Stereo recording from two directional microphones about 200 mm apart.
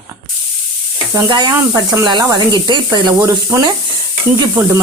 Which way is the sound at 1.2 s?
20° right (ahead or behind).